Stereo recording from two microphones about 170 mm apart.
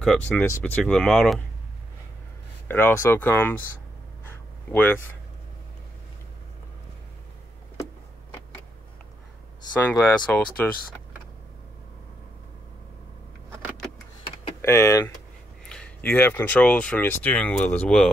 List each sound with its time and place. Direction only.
0.0 s speech: 5° left (ahead or behind)
2.7 s speech: 10° left (ahead or behind)
4.6 s speech: 10° left (ahead or behind)
10.2 s speech: 10° left (ahead or behind)
14.6 s speech: 15° left (ahead or behind)